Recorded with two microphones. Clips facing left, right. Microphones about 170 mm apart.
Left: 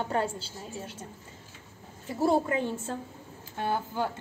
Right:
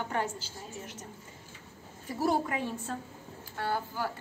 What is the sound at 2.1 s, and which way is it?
A woman's voice, 25° left (ahead or behind).